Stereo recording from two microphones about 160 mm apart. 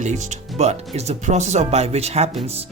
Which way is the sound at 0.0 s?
45° right (ahead or behind).